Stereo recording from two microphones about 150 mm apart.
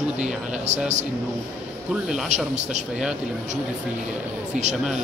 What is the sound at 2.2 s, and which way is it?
Speech, 50° right (ahead or behind).